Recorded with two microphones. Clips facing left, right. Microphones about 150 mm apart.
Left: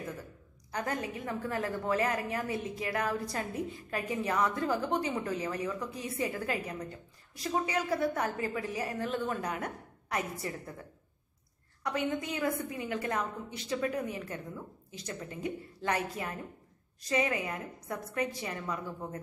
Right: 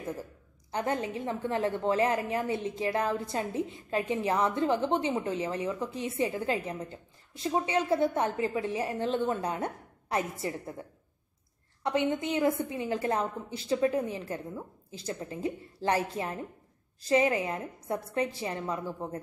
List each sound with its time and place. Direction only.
0.7 s a woman's voice: 25° right (ahead or behind)